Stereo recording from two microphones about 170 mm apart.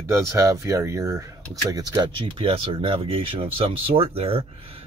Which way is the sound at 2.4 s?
30° right (ahead or behind).